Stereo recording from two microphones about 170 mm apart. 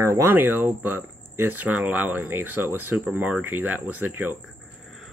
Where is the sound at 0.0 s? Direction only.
15° right (ahead or behind).